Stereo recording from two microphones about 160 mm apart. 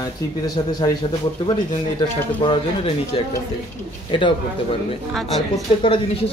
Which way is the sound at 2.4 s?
30° left (ahead or behind).